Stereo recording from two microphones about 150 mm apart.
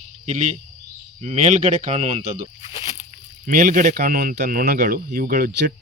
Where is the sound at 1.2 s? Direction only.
50° right (ahead or behind).